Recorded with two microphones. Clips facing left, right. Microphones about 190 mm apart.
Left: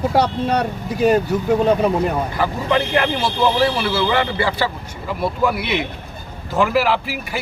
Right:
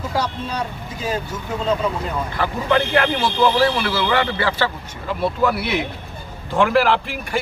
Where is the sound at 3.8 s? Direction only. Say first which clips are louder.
Left 1 dB; 25° left (ahead or behind).